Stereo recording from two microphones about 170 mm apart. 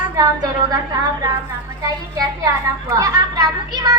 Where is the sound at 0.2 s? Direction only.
20° right (ahead or behind).